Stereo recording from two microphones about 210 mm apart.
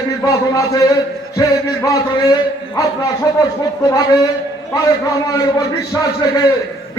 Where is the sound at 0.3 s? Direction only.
15° left (ahead or behind).